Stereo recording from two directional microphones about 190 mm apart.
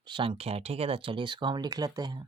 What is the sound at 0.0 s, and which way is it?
Speech, 25° right (ahead or behind).